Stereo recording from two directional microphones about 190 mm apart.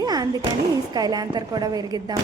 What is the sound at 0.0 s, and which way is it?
Music, 20° right (ahead or behind).